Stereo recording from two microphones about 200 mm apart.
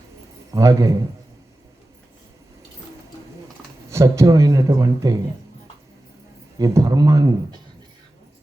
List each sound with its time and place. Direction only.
0.5 s speech: 15° right (ahead or behind)
3.8 s speech: 15° right (ahead or behind)
6.6 s speech: 15° right (ahead or behind)